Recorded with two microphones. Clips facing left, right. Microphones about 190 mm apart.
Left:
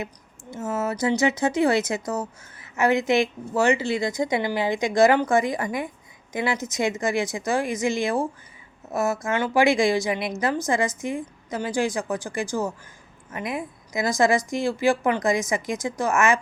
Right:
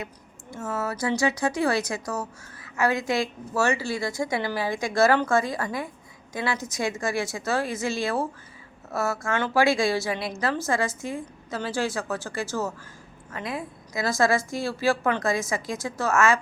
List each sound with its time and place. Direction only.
0.5 s a woman's voice: 20° left (ahead or behind)